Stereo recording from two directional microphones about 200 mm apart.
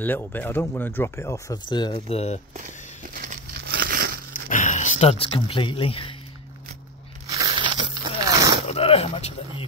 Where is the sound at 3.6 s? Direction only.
50° right (ahead or behind).